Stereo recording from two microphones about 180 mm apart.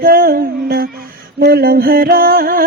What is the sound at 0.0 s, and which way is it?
Music, 55° right (ahead or behind).